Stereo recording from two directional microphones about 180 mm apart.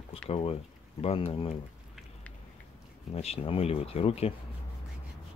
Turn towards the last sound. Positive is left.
turn(degrees=35)  # may be behind; listen again after turning